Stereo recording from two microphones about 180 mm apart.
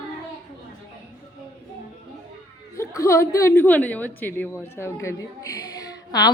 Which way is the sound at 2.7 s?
15° left (ahead or behind).